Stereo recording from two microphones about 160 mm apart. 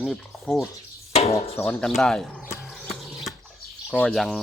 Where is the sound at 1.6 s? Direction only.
Centre (ahead or behind).